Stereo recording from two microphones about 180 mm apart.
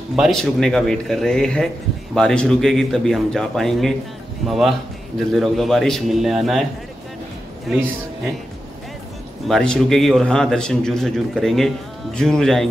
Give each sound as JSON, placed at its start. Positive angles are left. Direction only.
{"t": 0.1, "sound": "a man's voice", "side_deg": 0}
{"t": 9.5, "sound": "a man's voice", "side_deg": 5}